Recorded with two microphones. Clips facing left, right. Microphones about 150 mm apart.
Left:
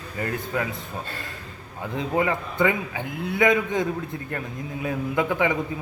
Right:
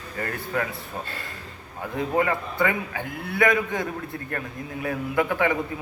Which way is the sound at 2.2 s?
20° left (ahead or behind).